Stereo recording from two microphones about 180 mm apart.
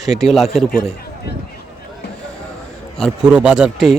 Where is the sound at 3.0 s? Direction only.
5° right (ahead or behind).